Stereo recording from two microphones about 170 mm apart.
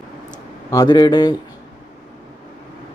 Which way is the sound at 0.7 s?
20° left (ahead or behind).